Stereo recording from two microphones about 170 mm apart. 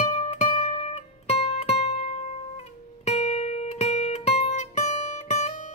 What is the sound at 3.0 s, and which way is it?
Music, 40° left (ahead or behind).